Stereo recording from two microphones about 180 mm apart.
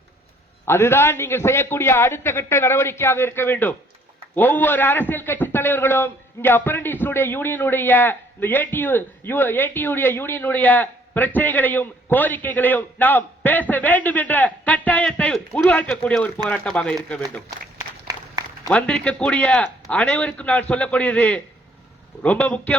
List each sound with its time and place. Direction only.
0.6 s a man's voice: 15° left (ahead or behind)
17.7 s a sound: 20° right (ahead or behind)
18.7 s a man's voice: 5° left (ahead or behind)